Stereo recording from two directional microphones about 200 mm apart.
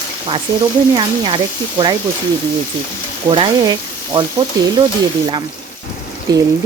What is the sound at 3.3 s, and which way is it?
Speech, 25° right (ahead or behind).